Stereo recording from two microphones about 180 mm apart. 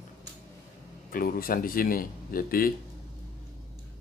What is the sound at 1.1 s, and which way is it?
Speech, 55° left (ahead or behind).